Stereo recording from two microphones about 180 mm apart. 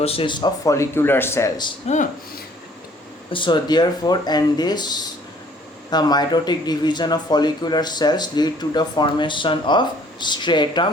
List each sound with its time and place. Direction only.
0.0 s speech: 30° left (ahead or behind)
3.3 s speech: 25° left (ahead or behind)